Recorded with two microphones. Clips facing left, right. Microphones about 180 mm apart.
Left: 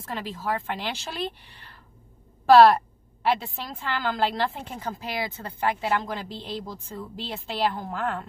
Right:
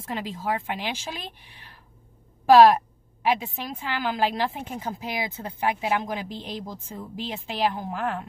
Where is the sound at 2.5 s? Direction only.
10° right (ahead or behind).